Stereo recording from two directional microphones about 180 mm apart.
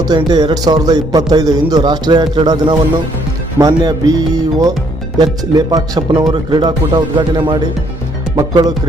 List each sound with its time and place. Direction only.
0.0 s speech: 20° right (ahead or behind)